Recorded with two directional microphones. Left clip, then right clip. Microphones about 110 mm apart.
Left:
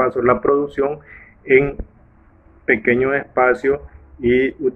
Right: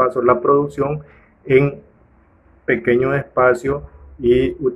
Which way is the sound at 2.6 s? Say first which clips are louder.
Even; 15° right (ahead or behind).